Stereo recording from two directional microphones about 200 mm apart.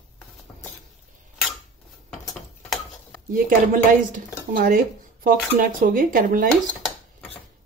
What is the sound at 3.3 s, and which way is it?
Speech, 45° right (ahead or behind).